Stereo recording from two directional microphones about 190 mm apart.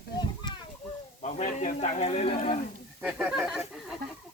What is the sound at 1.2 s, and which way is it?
Speech, 40° left (ahead or behind).